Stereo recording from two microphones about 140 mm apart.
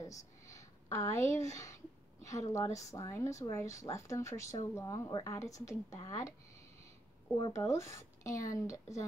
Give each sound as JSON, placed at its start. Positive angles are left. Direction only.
{"t": 0.0, "sound": "a sound", "side_deg": 25}
{"t": 2.2, "sound": "a woman's voice", "side_deg": 25}
{"t": 7.3, "sound": "a woman's voice", "side_deg": 25}